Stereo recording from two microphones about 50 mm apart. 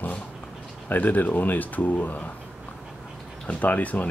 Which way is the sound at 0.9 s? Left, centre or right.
Left.